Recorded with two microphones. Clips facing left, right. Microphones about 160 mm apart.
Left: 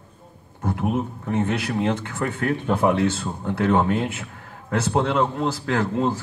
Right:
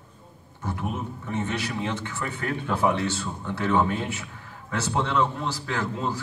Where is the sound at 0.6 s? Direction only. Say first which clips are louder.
Left 7 dB; 55° left (ahead or behind).